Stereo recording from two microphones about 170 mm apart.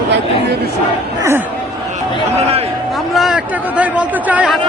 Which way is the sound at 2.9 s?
Centre (ahead or behind).